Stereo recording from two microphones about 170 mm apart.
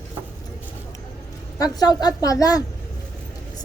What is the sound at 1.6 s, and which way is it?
Speech, 25° left (ahead or behind).